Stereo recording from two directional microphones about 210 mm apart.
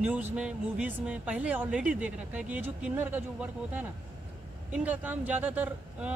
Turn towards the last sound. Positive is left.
turn(degrees=-5)  # may be behind; listen again after turning